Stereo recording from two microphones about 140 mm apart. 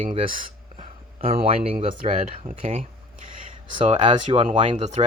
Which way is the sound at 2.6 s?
45° right (ahead or behind).